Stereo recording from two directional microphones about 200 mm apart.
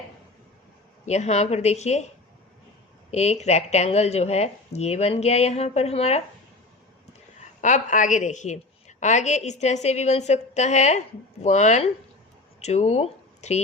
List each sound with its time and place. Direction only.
1.0 s a woman's voice: 35° left (ahead or behind)
3.1 s a woman's voice: 35° left (ahead or behind)
7.6 s a woman's voice: 40° left (ahead or behind)